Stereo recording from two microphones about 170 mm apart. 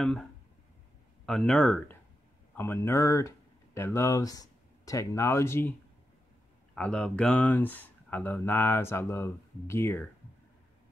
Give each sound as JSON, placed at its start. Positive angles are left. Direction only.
{"t": 0.0, "sound": "speech", "side_deg": 0}
{"t": 2.5, "sound": "speech", "side_deg": 15}